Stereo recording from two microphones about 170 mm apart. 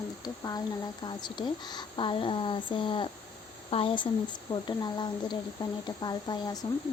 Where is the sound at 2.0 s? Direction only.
30° left (ahead or behind).